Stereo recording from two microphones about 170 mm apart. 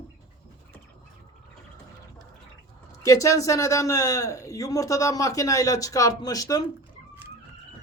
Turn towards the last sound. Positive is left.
turn(degrees=20)  # may be behind; listen again after turning